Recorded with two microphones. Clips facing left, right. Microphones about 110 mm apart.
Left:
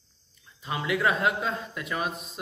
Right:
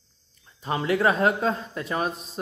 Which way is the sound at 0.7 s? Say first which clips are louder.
Right 4 dB; 40° right (ahead or behind).